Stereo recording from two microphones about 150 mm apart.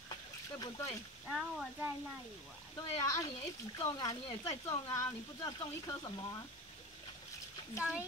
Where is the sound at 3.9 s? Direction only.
25° left (ahead or behind).